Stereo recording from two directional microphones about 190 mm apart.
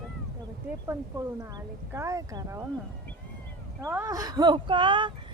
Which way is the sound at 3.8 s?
15° right (ahead or behind).